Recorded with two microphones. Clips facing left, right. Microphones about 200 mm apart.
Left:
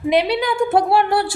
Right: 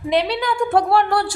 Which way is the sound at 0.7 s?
5° left (ahead or behind).